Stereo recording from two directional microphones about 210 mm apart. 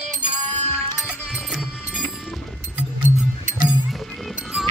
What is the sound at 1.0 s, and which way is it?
Music, centre (ahead or behind).